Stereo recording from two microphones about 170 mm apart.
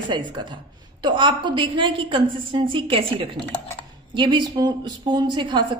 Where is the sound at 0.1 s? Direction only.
25° right (ahead or behind).